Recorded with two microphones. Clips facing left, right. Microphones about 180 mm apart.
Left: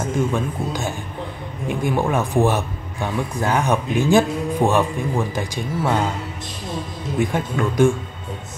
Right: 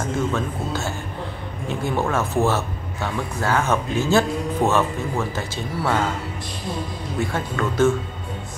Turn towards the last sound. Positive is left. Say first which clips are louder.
# left 2 dB
turn(degrees=15)  # may be behind; listen again after turning